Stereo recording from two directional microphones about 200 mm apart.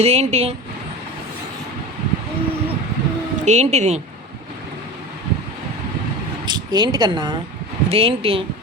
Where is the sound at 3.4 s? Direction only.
35° right (ahead or behind).